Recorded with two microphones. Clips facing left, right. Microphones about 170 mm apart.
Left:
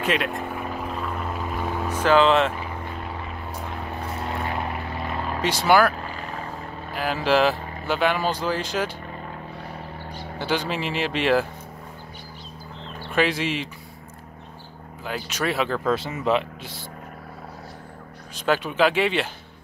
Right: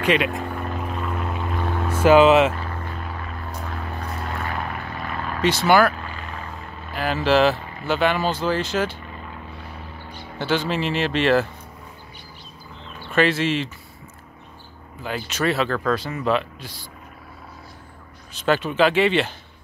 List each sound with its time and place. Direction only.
0.0 s vehicle: centre (ahead or behind)
1.9 s speech: 10° right (ahead or behind)
2.5 s vehicle: 15° left (ahead or behind)
5.4 s speech: 10° left (ahead or behind)
5.9 s vehicle: 35° left (ahead or behind)
7.0 s speech: 10° left (ahead or behind)
10.7 s speech: 10° left (ahead or behind)
13.1 s speech: 10° left (ahead or behind)
15.2 s speech: 10° left (ahead or behind)
18.3 s speech: 10° left (ahead or behind)